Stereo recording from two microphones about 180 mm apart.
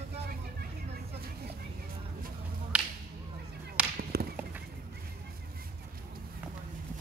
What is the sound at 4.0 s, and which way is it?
Whip, 60° right (ahead or behind).